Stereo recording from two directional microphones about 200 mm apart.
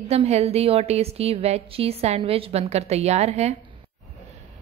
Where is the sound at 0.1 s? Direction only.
30° right (ahead or behind).